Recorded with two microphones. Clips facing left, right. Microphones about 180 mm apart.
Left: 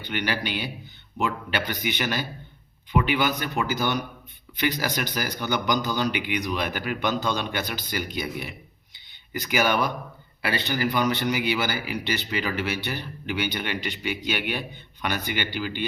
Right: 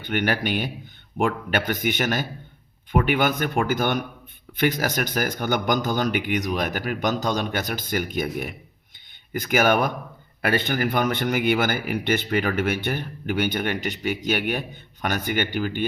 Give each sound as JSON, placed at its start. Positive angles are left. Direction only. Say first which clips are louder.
{"t": 0.0, "sound": "a man's voice", "louder": "right 4 dB", "side_deg": -50}